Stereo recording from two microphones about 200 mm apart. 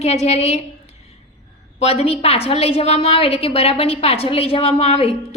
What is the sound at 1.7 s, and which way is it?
A woman's voice, 30° left (ahead or behind).